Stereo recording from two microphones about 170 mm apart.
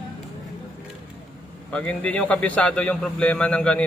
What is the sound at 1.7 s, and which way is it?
A man's voice, 5° left (ahead or behind).